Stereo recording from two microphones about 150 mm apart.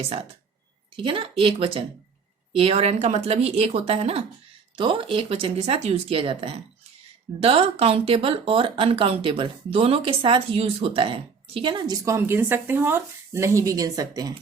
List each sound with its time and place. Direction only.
0.0 s speech: 40° right (ahead or behind); by 14.3 s 25° right (ahead or behind)